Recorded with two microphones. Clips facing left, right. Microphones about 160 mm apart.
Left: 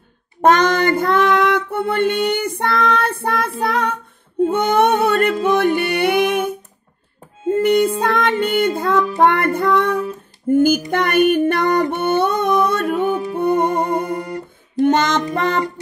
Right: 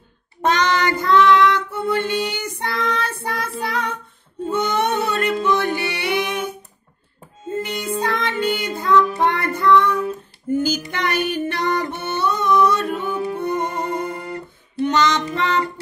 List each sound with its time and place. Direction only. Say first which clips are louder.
0.4 s child singing: left 5 dB; 50° left (ahead or behind)
4.5 s music: left 4 dB; 55° left (ahead or behind)
8.0 s child singing: left 4 dB; 55° left (ahead or behind)
10.5 s music: left 7 dB; 50° left (ahead or behind)